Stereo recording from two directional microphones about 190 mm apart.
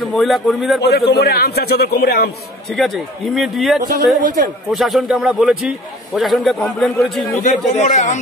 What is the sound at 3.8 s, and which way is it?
Speech, 50° right (ahead or behind).